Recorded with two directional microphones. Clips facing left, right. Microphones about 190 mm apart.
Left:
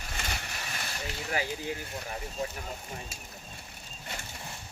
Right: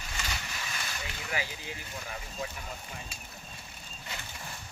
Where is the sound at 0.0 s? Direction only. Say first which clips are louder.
Left 1 dB; 50° left (ahead or behind).